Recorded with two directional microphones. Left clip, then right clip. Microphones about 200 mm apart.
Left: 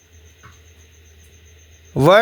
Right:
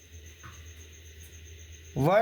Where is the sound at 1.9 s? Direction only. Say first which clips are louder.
Left 13 dB; 40° left (ahead or behind).